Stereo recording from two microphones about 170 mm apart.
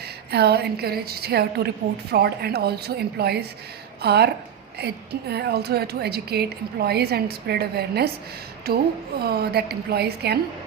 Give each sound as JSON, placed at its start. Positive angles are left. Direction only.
{"t": 0.3, "sound": "a woman's voice", "side_deg": -70}
{"t": 5.3, "sound": "a woman's voice", "side_deg": -70}